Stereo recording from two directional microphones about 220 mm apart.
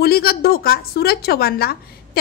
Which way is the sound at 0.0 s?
45° left (ahead or behind).